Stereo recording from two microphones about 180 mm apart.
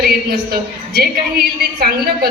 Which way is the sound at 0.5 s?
60° right (ahead or behind).